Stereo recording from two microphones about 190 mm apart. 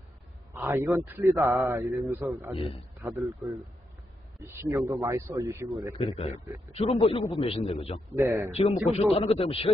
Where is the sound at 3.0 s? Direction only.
10° right (ahead or behind).